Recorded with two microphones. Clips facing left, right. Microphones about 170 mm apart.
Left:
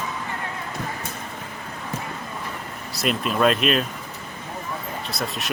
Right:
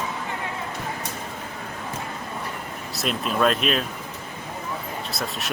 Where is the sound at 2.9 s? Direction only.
Centre (ahead or behind).